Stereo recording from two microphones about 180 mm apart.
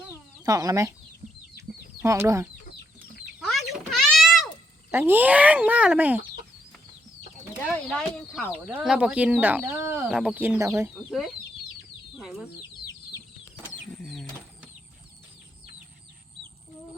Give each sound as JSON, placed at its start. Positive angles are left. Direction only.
{"t": 0.4, "sound": "speech", "side_deg": -20}
{"t": 2.0, "sound": "speech", "side_deg": -15}
{"t": 3.4, "sound": "a sound", "side_deg": 0}
{"t": 4.9, "sound": "speech", "side_deg": -10}
{"t": 7.6, "sound": "speech", "side_deg": 5}
{"t": 13.9, "sound": "a sound", "side_deg": 0}